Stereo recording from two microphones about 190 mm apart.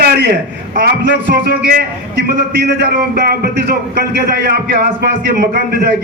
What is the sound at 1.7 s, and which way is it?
A man's voice, 55° right (ahead or behind).